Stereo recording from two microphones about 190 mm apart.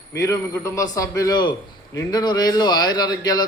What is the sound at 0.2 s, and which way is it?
A man's voice, 15° left (ahead or behind).